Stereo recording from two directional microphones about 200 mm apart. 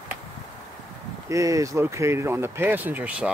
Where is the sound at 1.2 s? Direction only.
15° right (ahead or behind).